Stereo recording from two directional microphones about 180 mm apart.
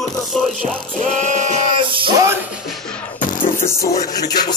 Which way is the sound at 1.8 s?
25° right (ahead or behind).